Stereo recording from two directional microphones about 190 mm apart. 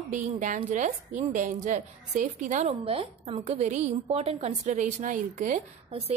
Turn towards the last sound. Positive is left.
turn(degrees=-35)  # may be behind; listen again after turning